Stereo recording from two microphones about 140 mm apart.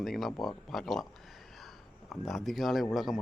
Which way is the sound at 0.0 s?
Centre (ahead or behind).